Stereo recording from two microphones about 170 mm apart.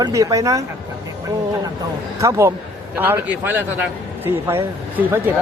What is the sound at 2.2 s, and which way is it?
Speech, 15° right (ahead or behind).